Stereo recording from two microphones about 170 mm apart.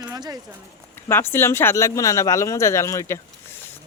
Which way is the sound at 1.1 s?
15° left (ahead or behind).